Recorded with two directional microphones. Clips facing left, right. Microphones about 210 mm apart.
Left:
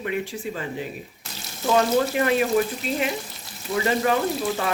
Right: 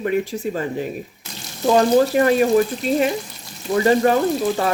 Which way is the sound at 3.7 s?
40° right (ahead or behind).